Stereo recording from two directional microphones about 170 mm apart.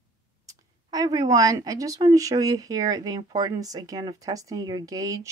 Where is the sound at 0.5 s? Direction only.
20° right (ahead or behind).